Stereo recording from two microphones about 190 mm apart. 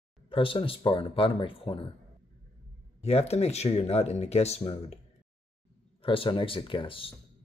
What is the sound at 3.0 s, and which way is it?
Speech, 35° left (ahead or behind).